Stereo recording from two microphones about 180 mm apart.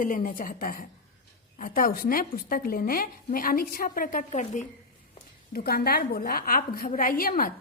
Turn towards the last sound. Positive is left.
turn(degrees=50)  # may be behind; listen again after turning